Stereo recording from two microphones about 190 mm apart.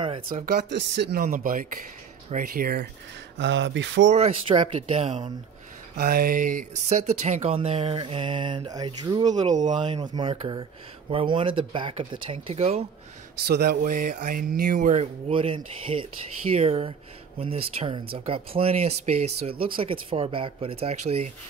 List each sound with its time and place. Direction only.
0.0 s speech: 25° right (ahead or behind)
0.5 s speech: 65° right (ahead or behind)
3.3 s speech: 75° right (ahead or behind)
4.1 s speech: 30° right (ahead or behind)
5.9 s speech: 50° right (ahead or behind); by 12.8 s 35° right (ahead or behind)
13.4 s speech: 55° right (ahead or behind); by 21.3 s 35° right (ahead or behind)